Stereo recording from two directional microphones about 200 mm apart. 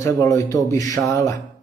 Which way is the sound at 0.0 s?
15° left (ahead or behind).